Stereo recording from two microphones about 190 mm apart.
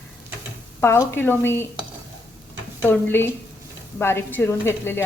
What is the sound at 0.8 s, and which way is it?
Speech, 15° left (ahead or behind).